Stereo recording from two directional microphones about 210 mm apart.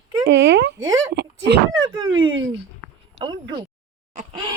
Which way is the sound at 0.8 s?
15° right (ahead or behind).